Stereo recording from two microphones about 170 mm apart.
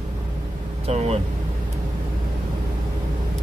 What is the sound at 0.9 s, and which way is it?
Speech, 40° right (ahead or behind).